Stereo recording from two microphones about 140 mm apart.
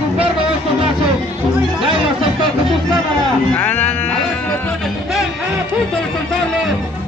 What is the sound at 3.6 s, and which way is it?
Speech, 15° left (ahead or behind).